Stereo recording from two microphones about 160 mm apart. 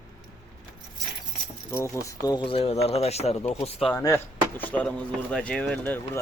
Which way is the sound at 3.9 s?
15° left (ahead or behind).